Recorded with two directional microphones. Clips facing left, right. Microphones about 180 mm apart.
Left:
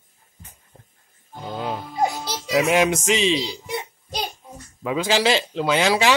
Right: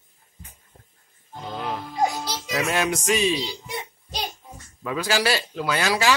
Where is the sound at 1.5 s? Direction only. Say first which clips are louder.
Left 2 dB; 25° left (ahead or behind).